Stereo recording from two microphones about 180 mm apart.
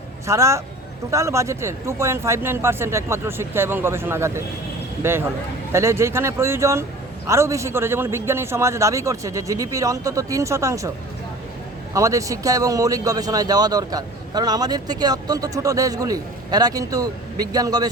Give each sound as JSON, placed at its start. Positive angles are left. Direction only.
{"t": 0.3, "sound": "speech", "side_deg": -15}
{"t": 11.9, "sound": "speech", "side_deg": -15}